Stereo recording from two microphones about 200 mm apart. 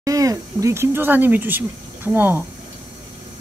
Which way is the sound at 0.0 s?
15° right (ahead or behind).